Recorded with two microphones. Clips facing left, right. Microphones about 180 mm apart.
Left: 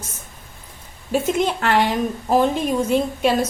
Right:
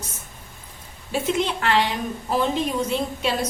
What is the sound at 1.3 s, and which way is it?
Speech, 45° left (ahead or behind).